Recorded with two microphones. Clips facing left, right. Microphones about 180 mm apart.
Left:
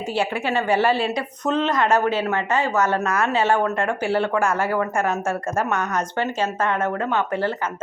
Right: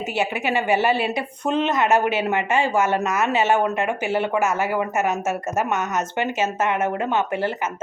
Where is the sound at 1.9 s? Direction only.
25° right (ahead or behind).